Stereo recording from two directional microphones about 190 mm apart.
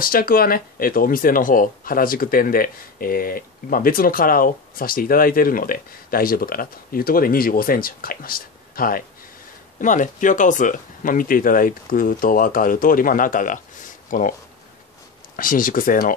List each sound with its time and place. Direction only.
0.0 s speech: 50° left (ahead or behind)
15.3 s speech: 45° left (ahead or behind)